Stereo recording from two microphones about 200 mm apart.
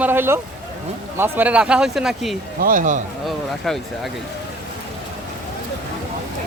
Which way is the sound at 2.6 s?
40° right (ahead or behind).